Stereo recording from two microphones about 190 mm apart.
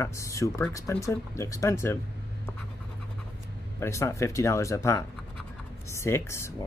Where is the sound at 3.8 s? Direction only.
15° left (ahead or behind).